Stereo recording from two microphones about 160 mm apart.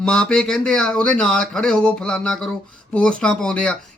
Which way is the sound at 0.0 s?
5° left (ahead or behind).